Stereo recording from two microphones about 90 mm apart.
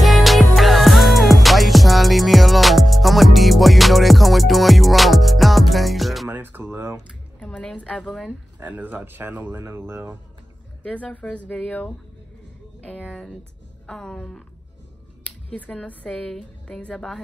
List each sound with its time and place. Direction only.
0.0 s music: centre (ahead or behind)
6.2 s music: 20° right (ahead or behind)
7.3 s a sound: 10° left (ahead or behind)
8.3 s speech: 20° right (ahead or behind)
10.8 s a woman's voice: 15° left (ahead or behind)